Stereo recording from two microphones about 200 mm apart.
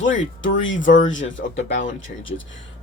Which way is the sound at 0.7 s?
40° left (ahead or behind).